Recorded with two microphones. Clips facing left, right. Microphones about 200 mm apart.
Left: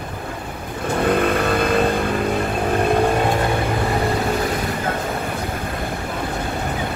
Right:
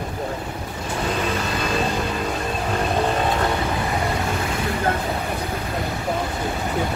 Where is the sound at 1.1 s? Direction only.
55° left (ahead or behind).